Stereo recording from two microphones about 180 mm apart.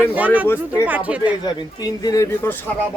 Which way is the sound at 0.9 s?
10° right (ahead or behind).